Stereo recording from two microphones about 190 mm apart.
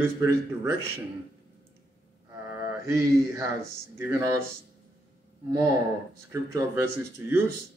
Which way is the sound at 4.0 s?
15° right (ahead or behind).